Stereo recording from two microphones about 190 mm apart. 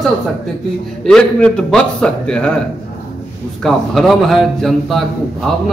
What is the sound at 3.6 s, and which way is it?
A man's voice, centre (ahead or behind).